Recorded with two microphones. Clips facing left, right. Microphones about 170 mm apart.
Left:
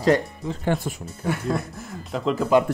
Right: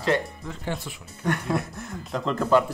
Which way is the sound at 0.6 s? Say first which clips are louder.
Left 8 dB; 50° left (ahead or behind).